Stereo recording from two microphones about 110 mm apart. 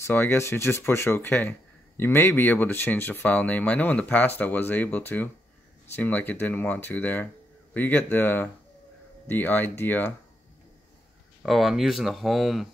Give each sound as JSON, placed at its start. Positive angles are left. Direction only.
{"t": 0.0, "sound": "speech", "side_deg": 20}
{"t": 11.4, "sound": "speech", "side_deg": 0}